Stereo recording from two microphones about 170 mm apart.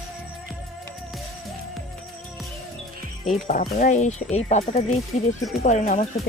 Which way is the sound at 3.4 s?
55° left (ahead or behind).